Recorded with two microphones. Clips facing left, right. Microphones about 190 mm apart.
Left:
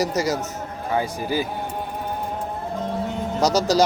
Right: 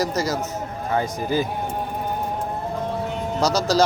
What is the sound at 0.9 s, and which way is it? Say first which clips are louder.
Speech: right 1 dB; 10° left (ahead or behind).